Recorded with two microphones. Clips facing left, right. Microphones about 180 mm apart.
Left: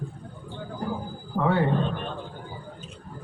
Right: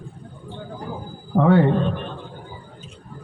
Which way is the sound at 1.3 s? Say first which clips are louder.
Right 7 dB; 65° right (ahead or behind).